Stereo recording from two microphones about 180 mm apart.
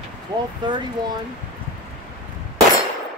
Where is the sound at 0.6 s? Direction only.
25° right (ahead or behind).